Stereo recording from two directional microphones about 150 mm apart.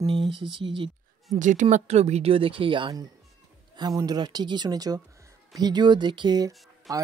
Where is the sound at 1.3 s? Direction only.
55° right (ahead or behind).